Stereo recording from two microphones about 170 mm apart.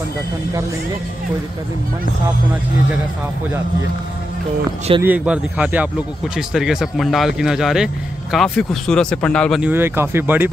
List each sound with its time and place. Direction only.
5.0 s speech: 10° right (ahead or behind)
9.6 s speech: 10° right (ahead or behind)